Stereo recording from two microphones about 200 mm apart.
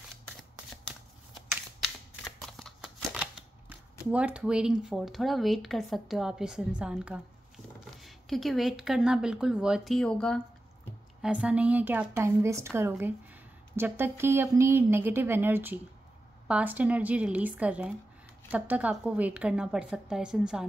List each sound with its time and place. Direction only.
1.8 s shuffling cards: centre (ahead or behind)
4.1 s speech: 5° right (ahead or behind)
11.2 s a woman's voice: 5° right (ahead or behind)